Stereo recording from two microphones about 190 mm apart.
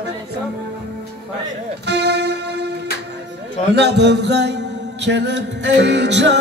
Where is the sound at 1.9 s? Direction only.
60° right (ahead or behind).